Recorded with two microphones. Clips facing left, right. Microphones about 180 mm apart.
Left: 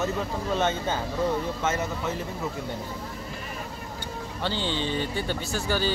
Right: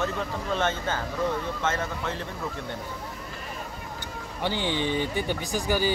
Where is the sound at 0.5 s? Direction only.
15° left (ahead or behind).